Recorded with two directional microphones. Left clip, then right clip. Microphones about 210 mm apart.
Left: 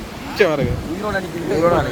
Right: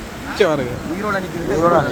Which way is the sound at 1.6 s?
15° left (ahead or behind).